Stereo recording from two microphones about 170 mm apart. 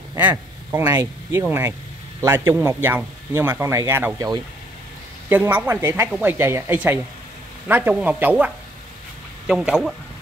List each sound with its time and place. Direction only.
0.2 s speech: 10° right (ahead or behind)
5.3 s speech: 10° right (ahead or behind)
9.5 s speech: 5° right (ahead or behind)